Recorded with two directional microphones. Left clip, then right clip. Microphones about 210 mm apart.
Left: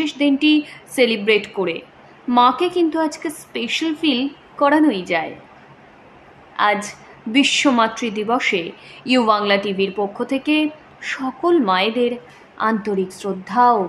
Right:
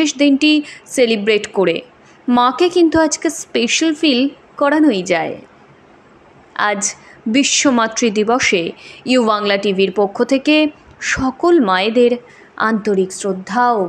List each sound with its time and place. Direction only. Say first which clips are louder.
0.0 s a woman's voice: right 4 dB; 20° right (ahead or behind)
6.5 s a woman's voice: right 1 dB; 20° right (ahead or behind)